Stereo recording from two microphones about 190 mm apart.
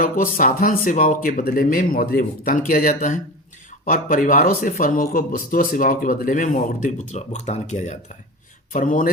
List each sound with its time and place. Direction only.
0.0 s speech: 45° left (ahead or behind)